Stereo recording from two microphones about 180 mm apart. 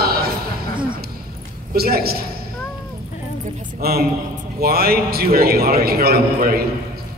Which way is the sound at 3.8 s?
60° right (ahead or behind).